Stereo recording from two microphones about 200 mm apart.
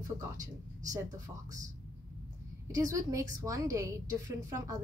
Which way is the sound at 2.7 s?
15° right (ahead or behind).